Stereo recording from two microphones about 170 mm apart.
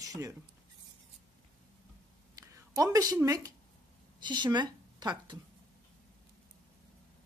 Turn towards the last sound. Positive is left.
turn(degrees=-25)  # may be behind; listen again after turning